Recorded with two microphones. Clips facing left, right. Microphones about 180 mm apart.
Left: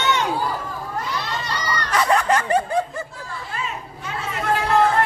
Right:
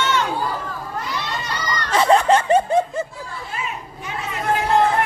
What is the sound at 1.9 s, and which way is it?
Snicker, 25° right (ahead or behind).